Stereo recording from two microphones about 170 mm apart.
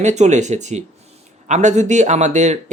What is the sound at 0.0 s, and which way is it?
Speech, 45° right (ahead or behind).